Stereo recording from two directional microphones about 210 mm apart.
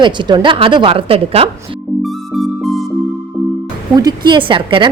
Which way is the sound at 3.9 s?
20° right (ahead or behind).